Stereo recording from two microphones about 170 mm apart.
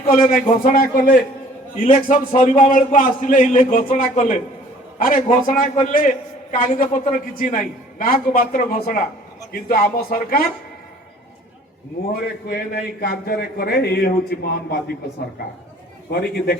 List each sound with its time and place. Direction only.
0.3 s a man's voice: 55° left (ahead or behind)
12.5 s speech: 70° left (ahead or behind)
16.1 s speech: 65° left (ahead or behind)